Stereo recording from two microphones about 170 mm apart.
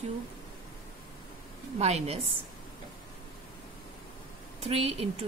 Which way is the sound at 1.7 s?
40° right (ahead or behind).